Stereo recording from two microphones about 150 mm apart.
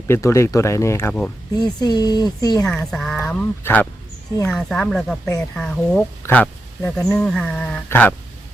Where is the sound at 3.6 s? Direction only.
15° left (ahead or behind).